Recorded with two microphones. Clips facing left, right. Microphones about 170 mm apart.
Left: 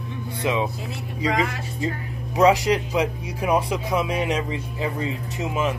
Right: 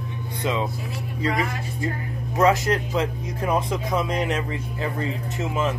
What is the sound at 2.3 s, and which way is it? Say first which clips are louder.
Speech: left 2 dB; 15° left (ahead or behind).